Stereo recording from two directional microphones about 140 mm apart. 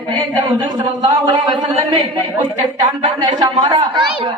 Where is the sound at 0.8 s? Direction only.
35° right (ahead or behind).